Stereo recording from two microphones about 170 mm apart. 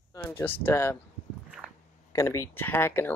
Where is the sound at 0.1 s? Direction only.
20° left (ahead or behind).